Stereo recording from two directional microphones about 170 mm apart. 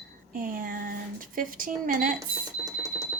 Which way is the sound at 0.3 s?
55° right (ahead or behind).